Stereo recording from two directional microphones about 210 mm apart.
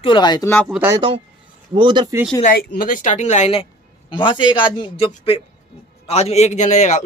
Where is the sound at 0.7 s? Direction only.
10° right (ahead or behind).